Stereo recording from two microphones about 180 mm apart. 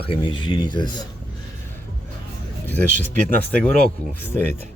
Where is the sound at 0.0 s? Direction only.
30° left (ahead or behind).